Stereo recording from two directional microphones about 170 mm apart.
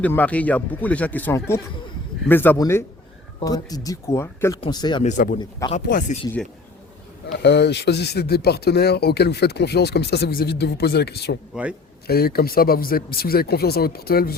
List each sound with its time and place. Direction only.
0.0 s speech: 10° left (ahead or behind); by 5.0 s 25° left (ahead or behind)
5.0 s speech: 50° left (ahead or behind)
5.4 s speech: 25° left (ahead or behind)
5.7 s speech: 45° left (ahead or behind)
7.3 s speech: 80° left
11.6 s a man's voice: 5° right (ahead or behind)
12.0 s speech: 65° left (ahead or behind)